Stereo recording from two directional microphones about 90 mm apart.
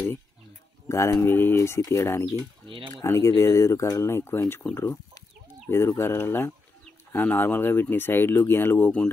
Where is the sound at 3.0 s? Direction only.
30° left (ahead or behind).